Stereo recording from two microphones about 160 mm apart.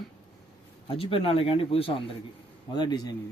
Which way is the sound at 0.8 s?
35° left (ahead or behind).